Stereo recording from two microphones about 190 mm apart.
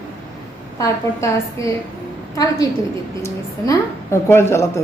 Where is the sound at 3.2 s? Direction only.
15° left (ahead or behind).